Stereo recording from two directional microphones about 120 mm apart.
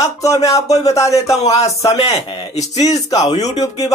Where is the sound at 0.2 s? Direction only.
30° left (ahead or behind).